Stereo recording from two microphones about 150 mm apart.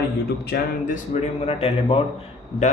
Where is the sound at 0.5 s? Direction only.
60° left (ahead or behind); by 2.0 s 40° left (ahead or behind).